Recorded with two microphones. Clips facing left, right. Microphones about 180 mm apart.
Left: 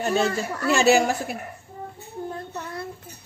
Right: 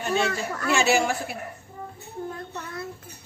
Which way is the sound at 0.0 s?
35° left (ahead or behind).